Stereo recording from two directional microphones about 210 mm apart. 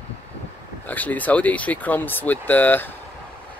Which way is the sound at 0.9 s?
10° left (ahead or behind).